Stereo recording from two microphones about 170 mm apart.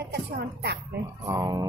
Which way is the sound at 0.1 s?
80° right.